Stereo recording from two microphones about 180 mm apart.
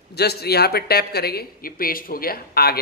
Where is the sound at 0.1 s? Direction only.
65° left (ahead or behind).